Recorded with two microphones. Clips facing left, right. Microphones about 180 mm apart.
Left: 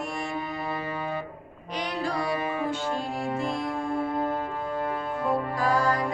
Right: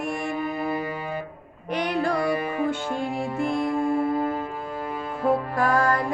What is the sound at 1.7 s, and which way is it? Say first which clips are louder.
Music: right 5 dB; 55° right (ahead or behind).